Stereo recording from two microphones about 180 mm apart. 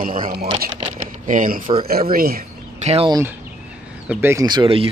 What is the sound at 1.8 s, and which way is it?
Speech, 55° right (ahead or behind).